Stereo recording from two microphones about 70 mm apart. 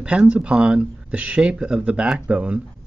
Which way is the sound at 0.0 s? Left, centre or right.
Centre.